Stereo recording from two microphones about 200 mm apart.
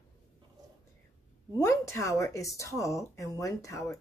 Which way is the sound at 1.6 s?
15° left (ahead or behind).